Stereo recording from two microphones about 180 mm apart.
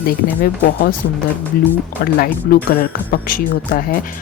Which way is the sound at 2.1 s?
55° left (ahead or behind).